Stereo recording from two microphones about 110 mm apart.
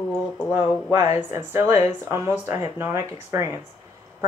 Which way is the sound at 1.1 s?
25° right (ahead or behind).